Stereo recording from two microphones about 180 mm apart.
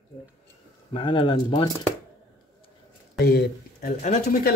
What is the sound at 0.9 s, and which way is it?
Speech, 25° left (ahead or behind).